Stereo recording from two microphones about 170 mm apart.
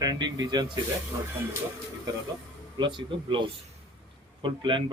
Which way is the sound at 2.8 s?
30° right (ahead or behind).